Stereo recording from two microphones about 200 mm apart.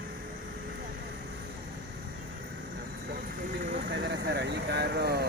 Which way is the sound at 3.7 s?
55° right (ahead or behind).